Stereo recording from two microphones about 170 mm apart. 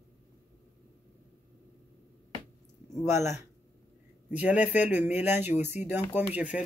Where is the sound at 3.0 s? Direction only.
15° right (ahead or behind).